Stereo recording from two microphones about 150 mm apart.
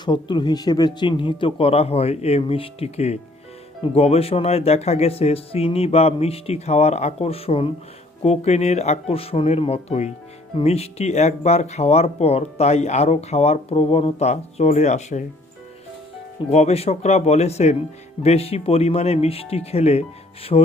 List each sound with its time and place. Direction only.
0.0 s speech: 30° left (ahead or behind); by 15.3 s 50° left (ahead or behind)
16.5 s speech: 45° left (ahead or behind)